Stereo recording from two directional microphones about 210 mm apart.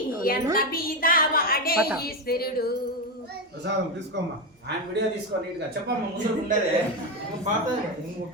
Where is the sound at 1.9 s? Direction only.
45° left (ahead or behind).